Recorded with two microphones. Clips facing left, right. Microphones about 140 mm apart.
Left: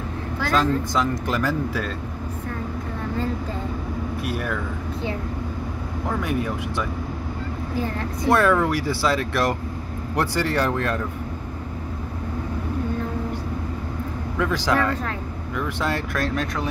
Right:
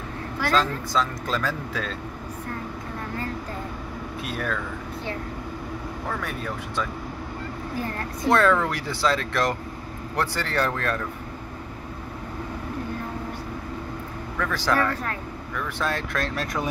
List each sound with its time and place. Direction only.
0.5 s speech: 15° left (ahead or behind)
4.3 s speech: 10° left (ahead or behind)
6.0 s speech: 15° left (ahead or behind)
8.3 s speech: 10° left (ahead or behind)
14.4 s speech: 15° left (ahead or behind)